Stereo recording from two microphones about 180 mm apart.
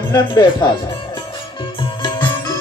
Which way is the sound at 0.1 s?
25° left (ahead or behind).